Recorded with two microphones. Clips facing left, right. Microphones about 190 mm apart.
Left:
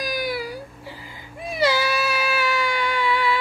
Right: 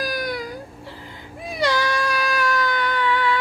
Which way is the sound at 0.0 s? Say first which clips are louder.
Even; centre (ahead or behind).